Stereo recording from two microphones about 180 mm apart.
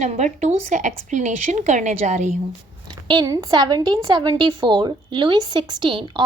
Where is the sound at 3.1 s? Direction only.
20° right (ahead or behind).